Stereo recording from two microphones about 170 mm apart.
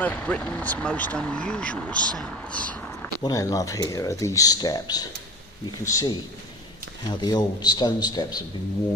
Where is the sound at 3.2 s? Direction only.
20° left (ahead or behind).